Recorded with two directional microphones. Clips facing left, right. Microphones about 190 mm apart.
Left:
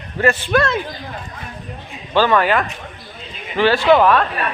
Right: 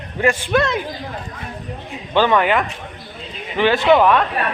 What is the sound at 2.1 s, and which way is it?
Speech, 20° right (ahead or behind).